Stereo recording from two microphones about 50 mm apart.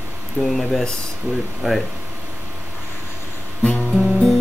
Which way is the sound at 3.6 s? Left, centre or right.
Left.